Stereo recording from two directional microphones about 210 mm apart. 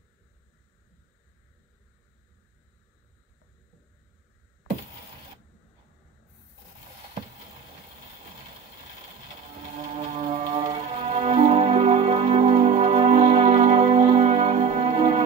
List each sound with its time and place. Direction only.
9.9 s music: 35° right (ahead or behind)